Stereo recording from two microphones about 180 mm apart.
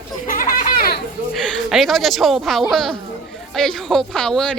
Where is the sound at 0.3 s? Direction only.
50° left (ahead or behind).